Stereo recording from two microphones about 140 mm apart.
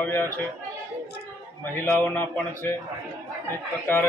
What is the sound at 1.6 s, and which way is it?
A man's voice, 15° left (ahead or behind).